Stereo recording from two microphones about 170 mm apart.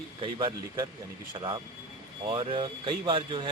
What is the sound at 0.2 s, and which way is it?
Speech, 25° right (ahead or behind).